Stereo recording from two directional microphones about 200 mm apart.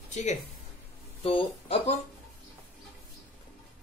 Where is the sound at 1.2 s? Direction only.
25° left (ahead or behind).